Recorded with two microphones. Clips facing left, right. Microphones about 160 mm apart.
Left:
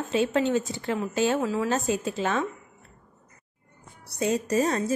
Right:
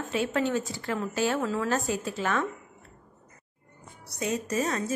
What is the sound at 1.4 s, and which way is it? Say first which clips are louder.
A woman's voice: left 2 dB; 10° left (ahead or behind).